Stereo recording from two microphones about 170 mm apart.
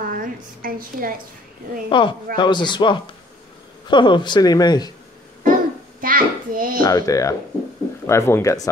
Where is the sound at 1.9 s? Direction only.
30° left (ahead or behind).